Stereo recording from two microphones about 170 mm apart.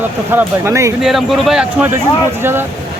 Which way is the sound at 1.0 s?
Centre (ahead or behind).